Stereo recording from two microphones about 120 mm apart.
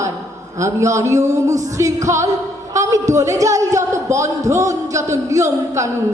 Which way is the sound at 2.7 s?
25° right (ahead or behind).